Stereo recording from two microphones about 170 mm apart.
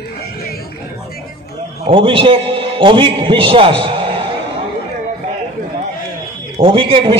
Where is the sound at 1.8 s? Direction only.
30° right (ahead or behind).